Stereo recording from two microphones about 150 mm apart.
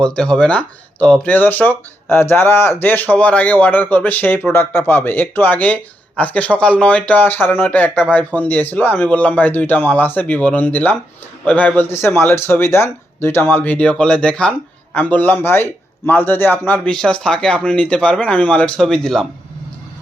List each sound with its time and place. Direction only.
0.0 s speech: 5° left (ahead or behind)